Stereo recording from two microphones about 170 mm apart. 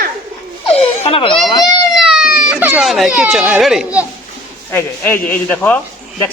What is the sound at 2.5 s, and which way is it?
A child's voice, 10° right (ahead or behind).